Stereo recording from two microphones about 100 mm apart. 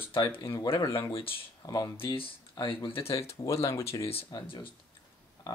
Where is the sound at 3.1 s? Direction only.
30° left (ahead or behind).